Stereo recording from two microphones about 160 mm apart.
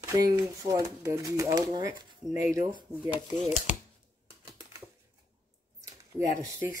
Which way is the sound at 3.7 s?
50° left (ahead or behind).